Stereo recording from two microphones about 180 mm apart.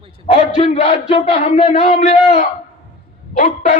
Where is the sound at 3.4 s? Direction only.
45° left (ahead or behind).